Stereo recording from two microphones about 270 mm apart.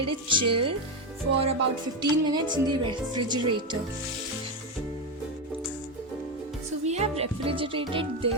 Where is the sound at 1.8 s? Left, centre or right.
Centre.